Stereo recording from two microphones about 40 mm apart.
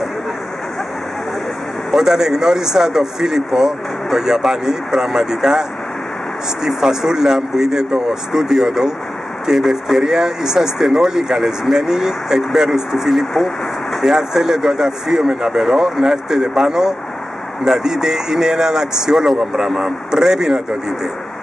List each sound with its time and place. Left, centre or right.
2.0 s a man's voice: centre
9.6 s speech: centre
10.0 s a man's voice: centre